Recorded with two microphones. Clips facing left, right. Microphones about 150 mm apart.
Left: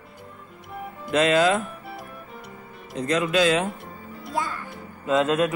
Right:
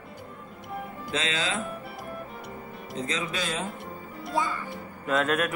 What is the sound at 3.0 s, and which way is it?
Speech, 65° left (ahead or behind).